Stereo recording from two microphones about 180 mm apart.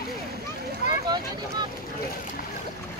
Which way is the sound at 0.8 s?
40° left (ahead or behind).